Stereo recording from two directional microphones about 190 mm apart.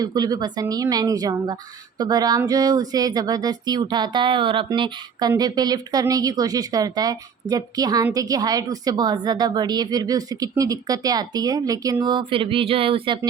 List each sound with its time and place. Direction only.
0.0 s speech: 20° right (ahead or behind)